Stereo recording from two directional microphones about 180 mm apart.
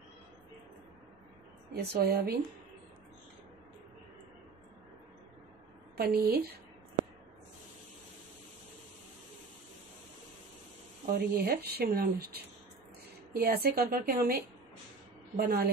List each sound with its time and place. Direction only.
1.8 s speech: 65° right (ahead or behind)
5.9 s speech: 60° right (ahead or behind)
11.1 s speech: 55° right (ahead or behind)